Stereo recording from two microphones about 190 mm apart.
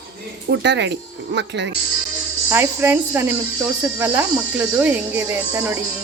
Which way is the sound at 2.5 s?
10° right (ahead or behind).